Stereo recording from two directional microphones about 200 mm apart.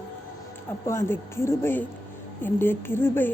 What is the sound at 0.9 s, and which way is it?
Music, 15° left (ahead or behind).